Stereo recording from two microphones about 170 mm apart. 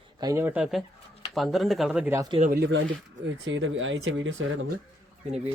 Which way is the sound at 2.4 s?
65° right (ahead or behind).